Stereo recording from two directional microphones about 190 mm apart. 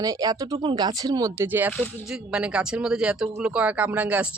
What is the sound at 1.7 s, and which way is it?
Speech, 10° left (ahead or behind).